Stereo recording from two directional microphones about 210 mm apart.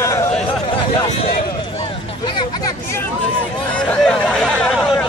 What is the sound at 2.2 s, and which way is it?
Speech, 20° left (ahead or behind).